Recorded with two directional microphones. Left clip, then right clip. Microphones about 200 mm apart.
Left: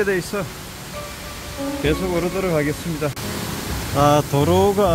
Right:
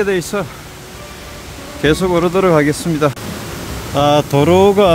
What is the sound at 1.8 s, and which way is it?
Speech, 45° right (ahead or behind).